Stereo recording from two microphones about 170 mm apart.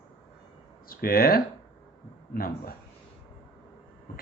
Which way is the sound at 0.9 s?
60° left (ahead or behind).